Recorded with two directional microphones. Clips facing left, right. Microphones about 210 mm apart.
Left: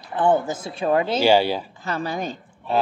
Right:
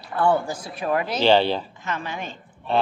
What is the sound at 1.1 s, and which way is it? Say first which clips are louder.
Speech: right 2 dB; 10° left (ahead or behind).